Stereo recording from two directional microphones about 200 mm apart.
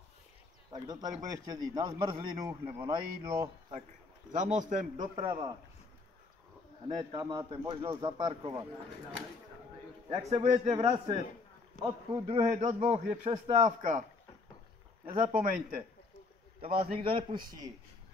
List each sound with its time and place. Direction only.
0.7 s a man's voice: 20° right (ahead or behind)
4.3 s a man's voice: 40° right (ahead or behind)
5.1 s a man's voice: 25° right (ahead or behind)
7.0 s a man's voice: 25° right (ahead or behind)
10.0 s a man's voice: 30° right (ahead or behind)
10.7 s a man's voice: 25° right (ahead or behind)
11.7 s speech: 40° left (ahead or behind)
12.3 s a man's voice: 30° right (ahead or behind)
15.3 s a man's voice: 45° right (ahead or behind)
16.6 s a man's voice: 25° right (ahead or behind)